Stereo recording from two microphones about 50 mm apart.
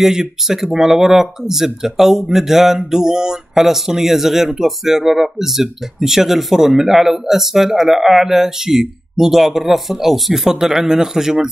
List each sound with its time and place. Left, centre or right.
0.0 s speech: centre